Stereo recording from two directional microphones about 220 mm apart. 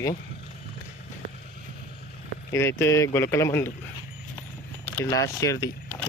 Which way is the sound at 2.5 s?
10° left (ahead or behind).